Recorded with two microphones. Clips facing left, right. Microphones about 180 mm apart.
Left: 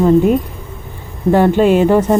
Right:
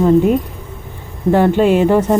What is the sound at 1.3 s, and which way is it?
Speech, 15° left (ahead or behind).